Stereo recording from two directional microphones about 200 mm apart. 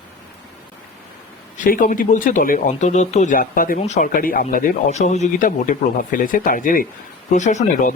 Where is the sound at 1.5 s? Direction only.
40° left (ahead or behind).